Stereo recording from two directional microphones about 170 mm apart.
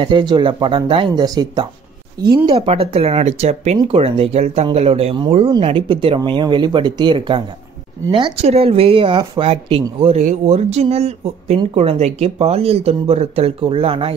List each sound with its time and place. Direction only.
0.0 s speech: 25° right (ahead or behind)
2.5 s speech: 35° right (ahead or behind)